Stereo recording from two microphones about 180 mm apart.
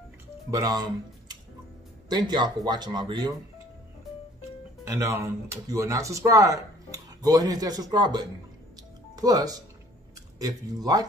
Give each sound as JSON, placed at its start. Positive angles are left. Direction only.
{"t": 0.5, "sound": "speech", "side_deg": -20}
{"t": 2.0, "sound": "speech", "side_deg": -25}
{"t": 4.8, "sound": "speech", "side_deg": -15}